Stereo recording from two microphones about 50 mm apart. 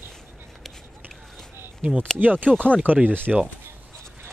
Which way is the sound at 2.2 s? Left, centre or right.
Right.